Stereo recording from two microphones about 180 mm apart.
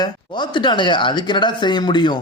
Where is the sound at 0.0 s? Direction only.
25° left (ahead or behind).